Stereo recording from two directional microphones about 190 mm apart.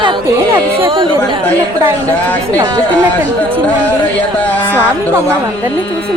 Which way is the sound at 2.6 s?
20° right (ahead or behind).